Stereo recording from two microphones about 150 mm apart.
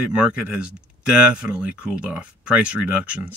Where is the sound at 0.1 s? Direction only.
5° right (ahead or behind).